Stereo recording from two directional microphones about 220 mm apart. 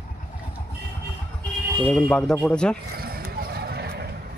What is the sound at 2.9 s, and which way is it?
Mechanisms, 45° right (ahead or behind).